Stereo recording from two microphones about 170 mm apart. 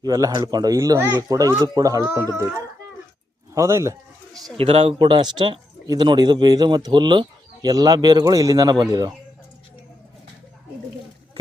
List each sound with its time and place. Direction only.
0.0 s speech: 20° right (ahead or behind)
3.5 s speech: 15° right (ahead or behind)
4.5 s speech: 35° right (ahead or behind)